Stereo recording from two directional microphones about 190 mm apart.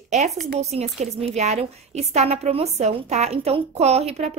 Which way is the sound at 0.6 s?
35° right (ahead or behind).